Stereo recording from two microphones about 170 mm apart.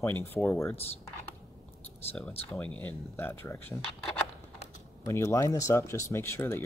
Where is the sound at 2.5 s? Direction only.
10° left (ahead or behind).